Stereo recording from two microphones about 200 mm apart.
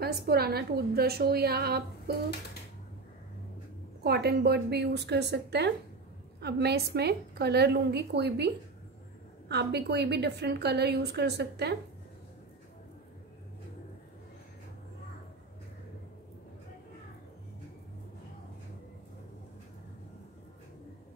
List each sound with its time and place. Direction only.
0.0 s a woman's voice: 50° right (ahead or behind)
4.0 s a woman's voice: 55° right (ahead or behind)
9.5 s a woman's voice: 55° right (ahead or behind)